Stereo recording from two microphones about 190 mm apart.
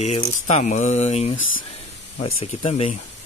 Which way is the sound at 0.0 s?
35° left (ahead or behind).